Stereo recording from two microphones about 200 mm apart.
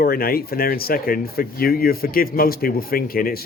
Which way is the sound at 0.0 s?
50° left (ahead or behind).